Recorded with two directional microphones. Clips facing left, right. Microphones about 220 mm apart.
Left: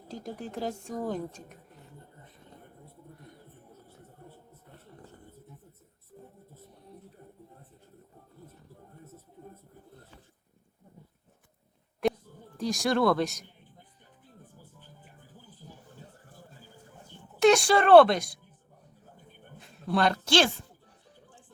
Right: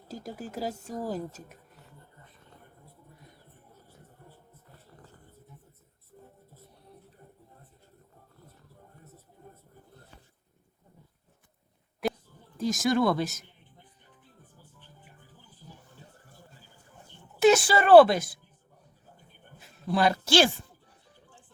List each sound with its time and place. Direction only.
0.1 s speech: 5° right (ahead or behind)
12.5 s speech: centre (ahead or behind)
15.6 s a sound: 45° left (ahead or behind)
17.4 s speech: 5° right (ahead or behind)
19.5 s speech: 5° right (ahead or behind)